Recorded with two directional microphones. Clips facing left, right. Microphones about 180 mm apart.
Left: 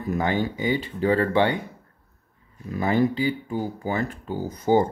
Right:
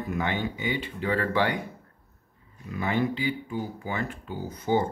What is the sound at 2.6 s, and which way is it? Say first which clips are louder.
Speech: left 5 dB; 40° left (ahead or behind).